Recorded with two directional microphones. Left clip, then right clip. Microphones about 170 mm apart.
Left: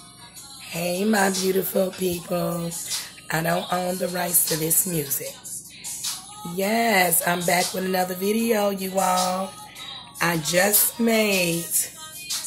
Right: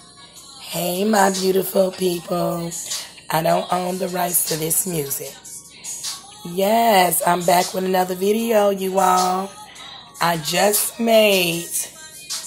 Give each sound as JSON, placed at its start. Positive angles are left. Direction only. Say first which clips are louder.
{"t": 0.7, "sound": "speech", "louder": "right 3 dB", "side_deg": -15}
{"t": 1.6, "sound": "speech", "louder": "right 5 dB", "side_deg": 0}
{"t": 6.5, "sound": "speech", "louder": "right 6 dB", "side_deg": -15}